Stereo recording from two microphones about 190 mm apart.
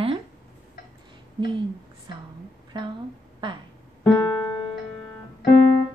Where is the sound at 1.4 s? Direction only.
25° right (ahead or behind).